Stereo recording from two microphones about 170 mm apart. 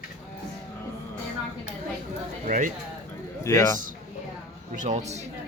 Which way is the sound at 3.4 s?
15° left (ahead or behind).